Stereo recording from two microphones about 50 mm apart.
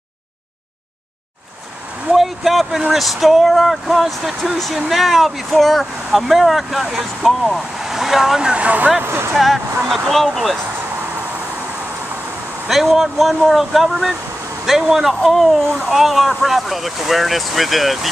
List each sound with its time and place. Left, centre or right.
2.1 s a sound: centre
2.9 s speech: centre; by 9.0 s right
9.0 s speech: right
9.3 s speech: centre
12.6 s speech: centre